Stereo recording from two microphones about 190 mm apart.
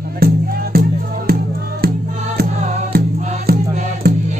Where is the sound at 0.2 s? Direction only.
55° right (ahead or behind).